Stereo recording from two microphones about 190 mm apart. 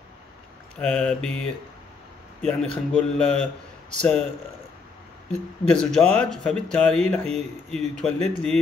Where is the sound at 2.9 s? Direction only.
5° left (ahead or behind).